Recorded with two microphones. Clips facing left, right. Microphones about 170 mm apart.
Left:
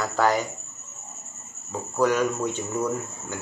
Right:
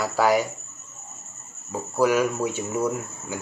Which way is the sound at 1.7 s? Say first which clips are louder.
Right 1 dB; 10° right (ahead or behind).